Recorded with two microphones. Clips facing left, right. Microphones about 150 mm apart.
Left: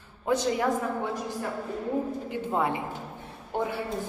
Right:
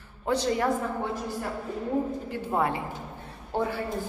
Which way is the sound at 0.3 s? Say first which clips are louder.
Even; 15° left (ahead or behind).